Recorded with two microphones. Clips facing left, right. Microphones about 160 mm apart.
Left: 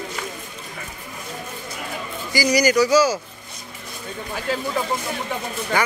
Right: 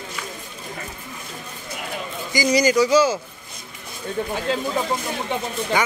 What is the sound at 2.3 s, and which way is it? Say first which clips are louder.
Speech: even; 25° right (ahead or behind).